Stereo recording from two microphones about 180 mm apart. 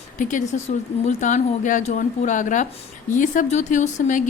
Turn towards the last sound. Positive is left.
turn(degrees=45)  # may be behind; listen again after turning